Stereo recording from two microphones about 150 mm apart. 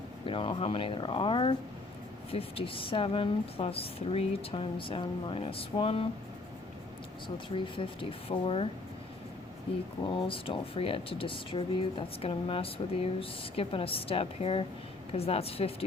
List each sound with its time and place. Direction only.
0.3 s speech: 35° left (ahead or behind)
7.3 s speech: 35° left (ahead or behind)
10.1 s speech: 35° left (ahead or behind)